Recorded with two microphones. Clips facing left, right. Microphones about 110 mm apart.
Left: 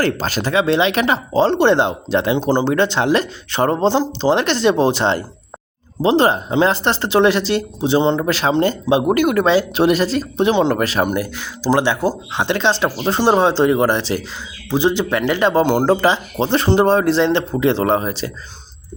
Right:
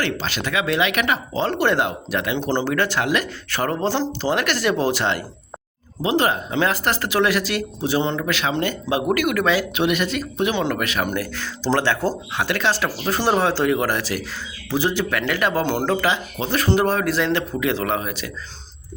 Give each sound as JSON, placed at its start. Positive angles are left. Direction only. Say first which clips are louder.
{"t": 0.0, "sound": "speech", "louder": "left 6 dB", "side_deg": 40}
{"t": 2.4, "sound": "speech", "louder": "left 5 dB", "side_deg": 15}
{"t": 8.2, "sound": "speech", "louder": "left 6 dB", "side_deg": 35}
{"t": 11.1, "sound": "speech", "louder": "left 4 dB", "side_deg": 15}